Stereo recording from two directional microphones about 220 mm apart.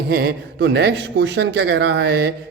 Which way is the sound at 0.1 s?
45° right (ahead or behind).